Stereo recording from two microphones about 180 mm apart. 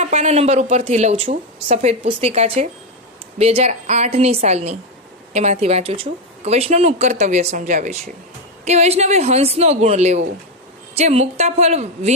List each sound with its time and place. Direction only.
0.0 s a woman's voice: 40° right (ahead or behind)